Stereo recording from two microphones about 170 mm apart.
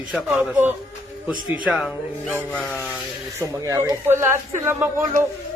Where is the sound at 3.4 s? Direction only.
20° right (ahead or behind).